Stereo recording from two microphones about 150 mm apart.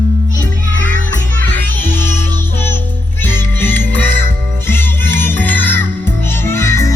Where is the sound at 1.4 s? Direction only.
15° left (ahead or behind).